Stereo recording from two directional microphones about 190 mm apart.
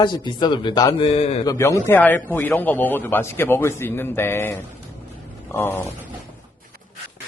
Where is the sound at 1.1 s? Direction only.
35° left (ahead or behind).